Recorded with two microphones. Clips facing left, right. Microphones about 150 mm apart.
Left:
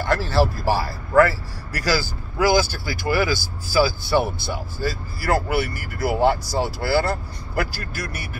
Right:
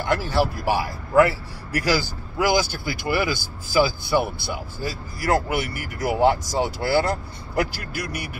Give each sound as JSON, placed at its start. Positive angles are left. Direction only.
{"t": 0.1, "sound": "speech", "side_deg": -15}